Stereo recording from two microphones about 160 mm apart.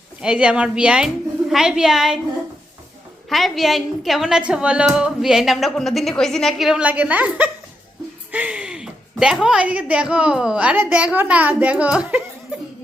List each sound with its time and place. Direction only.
0.2 s a woman's voice: 5° right (ahead or behind)
3.2 s a woman's voice: centre (ahead or behind)